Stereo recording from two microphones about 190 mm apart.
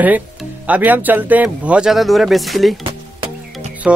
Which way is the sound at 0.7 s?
10° right (ahead or behind).